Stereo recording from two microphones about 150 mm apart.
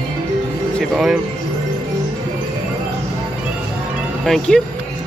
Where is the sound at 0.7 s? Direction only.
5° right (ahead or behind).